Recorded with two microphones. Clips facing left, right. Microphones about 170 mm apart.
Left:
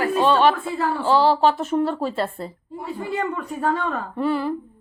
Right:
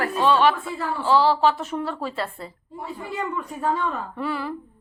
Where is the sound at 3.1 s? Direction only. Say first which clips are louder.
Left 3 dB; 70° left (ahead or behind).